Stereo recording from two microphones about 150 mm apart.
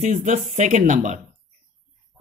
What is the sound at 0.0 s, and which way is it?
Speech, 50° right (ahead or behind).